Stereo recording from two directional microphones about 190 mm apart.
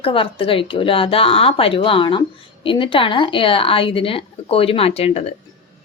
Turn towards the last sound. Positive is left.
turn(degrees=30)  # may be behind; listen again after turning